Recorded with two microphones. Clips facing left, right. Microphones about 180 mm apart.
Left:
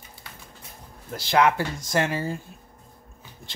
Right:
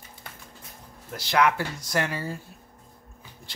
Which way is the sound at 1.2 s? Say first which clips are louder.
Left 2 dB; 30° left (ahead or behind).